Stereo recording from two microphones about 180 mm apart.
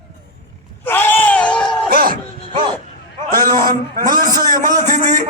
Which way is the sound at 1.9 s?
50° right (ahead or behind).